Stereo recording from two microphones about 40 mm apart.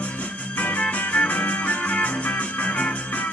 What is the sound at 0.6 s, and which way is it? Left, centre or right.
Music, left.